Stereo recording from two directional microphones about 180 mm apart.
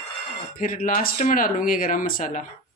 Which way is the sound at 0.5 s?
50° left (ahead or behind).